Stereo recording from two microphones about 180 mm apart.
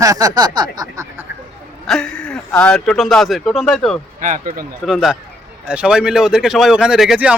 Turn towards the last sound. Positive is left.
turn(degrees=-5)  # may be behind; listen again after turning